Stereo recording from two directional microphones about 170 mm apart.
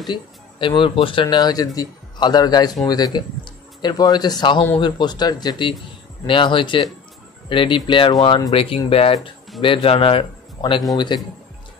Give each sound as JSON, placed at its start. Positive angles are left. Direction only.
{"t": 0.0, "sound": "a man's voice", "side_deg": 30}